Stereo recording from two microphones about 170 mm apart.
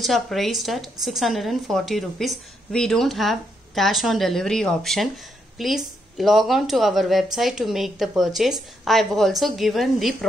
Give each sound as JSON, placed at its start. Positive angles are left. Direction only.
{"t": 0.0, "sound": "speech", "side_deg": 0}